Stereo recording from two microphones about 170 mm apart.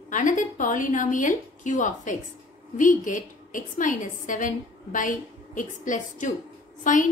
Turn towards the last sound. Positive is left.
turn(degrees=50)  # may be behind; listen again after turning